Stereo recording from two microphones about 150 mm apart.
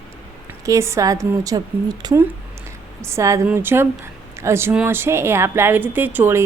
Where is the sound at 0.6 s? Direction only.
20° right (ahead or behind).